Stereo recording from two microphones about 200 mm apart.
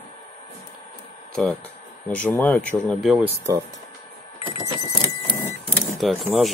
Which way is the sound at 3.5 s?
20° right (ahead or behind).